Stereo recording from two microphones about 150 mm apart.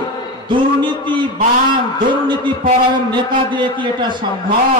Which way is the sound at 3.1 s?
30° right (ahead or behind).